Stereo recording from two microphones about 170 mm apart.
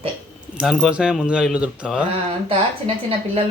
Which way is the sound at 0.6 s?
Centre (ahead or behind).